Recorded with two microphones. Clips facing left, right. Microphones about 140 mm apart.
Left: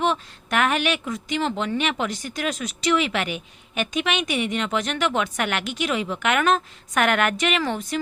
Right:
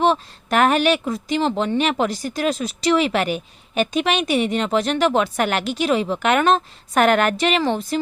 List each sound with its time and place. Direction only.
0.0 s speech: 35° right (ahead or behind)